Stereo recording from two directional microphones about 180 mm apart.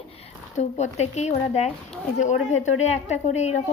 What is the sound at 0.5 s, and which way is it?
A woman's voice, 40° left (ahead or behind).